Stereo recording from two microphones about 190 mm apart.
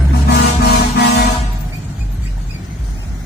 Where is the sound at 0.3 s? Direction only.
60° left (ahead or behind).